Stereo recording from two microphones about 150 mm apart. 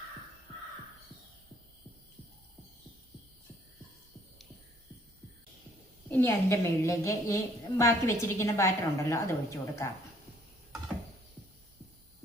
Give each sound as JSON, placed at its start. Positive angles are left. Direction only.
{"t": 6.1, "sound": "a woman's voice", "side_deg": 15}